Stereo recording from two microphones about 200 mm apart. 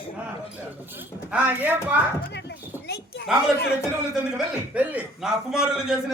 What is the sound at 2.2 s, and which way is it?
Speech, 55° left (ahead or behind).